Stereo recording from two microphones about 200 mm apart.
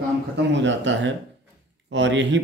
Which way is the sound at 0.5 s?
65° right (ahead or behind).